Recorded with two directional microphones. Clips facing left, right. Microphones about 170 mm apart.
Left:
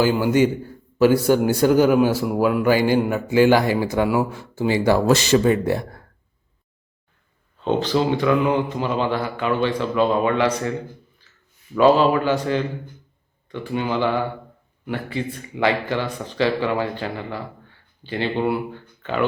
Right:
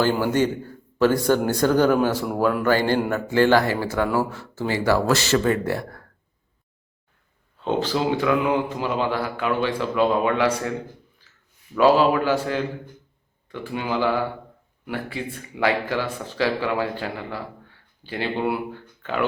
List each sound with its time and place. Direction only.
0.0 s a man's voice: 10° left (ahead or behind)
7.6 s speech: 10° right (ahead or behind)
11.8 s speech: 5° right (ahead or behind)